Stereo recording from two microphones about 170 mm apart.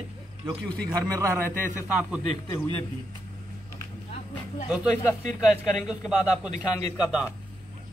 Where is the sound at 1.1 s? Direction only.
15° right (ahead or behind).